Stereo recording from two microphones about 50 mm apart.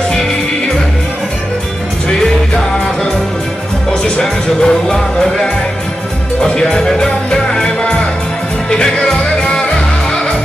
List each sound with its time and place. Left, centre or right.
2.0 s music: centre
4.2 s music: centre